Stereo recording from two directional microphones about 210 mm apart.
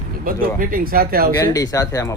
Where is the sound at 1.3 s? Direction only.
15° left (ahead or behind).